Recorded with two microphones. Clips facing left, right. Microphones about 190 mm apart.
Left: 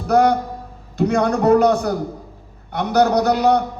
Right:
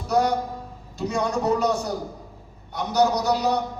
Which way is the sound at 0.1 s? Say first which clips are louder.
Left 6 dB; 65° left (ahead or behind).